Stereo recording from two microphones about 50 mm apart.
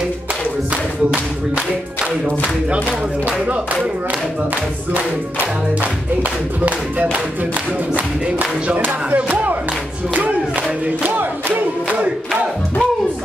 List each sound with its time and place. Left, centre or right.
4.9 s speech: right
7.9 s speech: right
11.0 s music: right